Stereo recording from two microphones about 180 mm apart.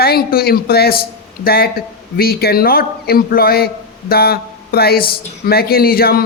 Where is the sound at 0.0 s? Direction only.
60° left (ahead or behind).